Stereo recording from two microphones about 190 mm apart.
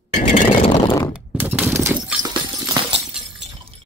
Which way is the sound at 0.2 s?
40° left (ahead or behind).